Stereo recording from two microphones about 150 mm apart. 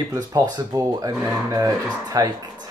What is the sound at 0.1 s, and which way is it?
Speech, 25° right (ahead or behind).